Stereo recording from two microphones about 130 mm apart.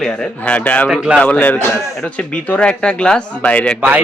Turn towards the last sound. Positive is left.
turn(degrees=-10)  # may be behind; listen again after turning